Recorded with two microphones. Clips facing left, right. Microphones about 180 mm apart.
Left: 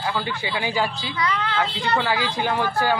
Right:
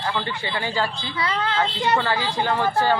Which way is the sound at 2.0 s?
10° left (ahead or behind).